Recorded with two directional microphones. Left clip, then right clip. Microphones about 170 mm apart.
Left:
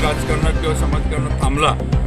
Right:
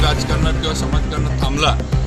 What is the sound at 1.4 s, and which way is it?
Speech, 5° left (ahead or behind).